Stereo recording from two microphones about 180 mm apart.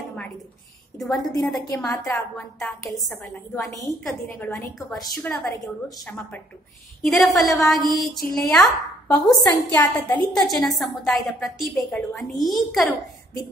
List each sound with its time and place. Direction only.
0.9 s a woman's voice: centre (ahead or behind)
1.9 s a woman's voice: 20° left (ahead or behind)
3.1 s a woman's voice: centre (ahead or behind)
3.8 s a woman's voice: 15° left (ahead or behind)
4.7 s a woman's voice: centre (ahead or behind)
9.4 s a woman's voice: 20° left (ahead or behind)
10.5 s a woman's voice: centre (ahead or behind)